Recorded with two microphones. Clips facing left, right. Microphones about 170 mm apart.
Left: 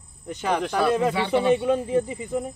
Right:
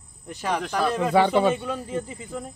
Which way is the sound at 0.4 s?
Centre (ahead or behind).